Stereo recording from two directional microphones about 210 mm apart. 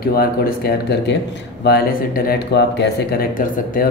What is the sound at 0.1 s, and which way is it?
Speech, 45° left (ahead or behind).